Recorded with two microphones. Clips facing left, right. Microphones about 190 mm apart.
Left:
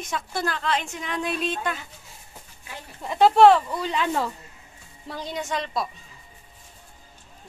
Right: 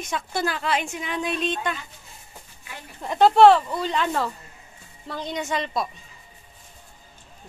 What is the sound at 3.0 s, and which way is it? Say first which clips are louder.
A woman's voice: right 1 dB; 5° left (ahead or behind).